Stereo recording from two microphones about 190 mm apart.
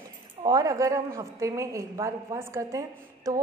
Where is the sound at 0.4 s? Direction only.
20° right (ahead or behind).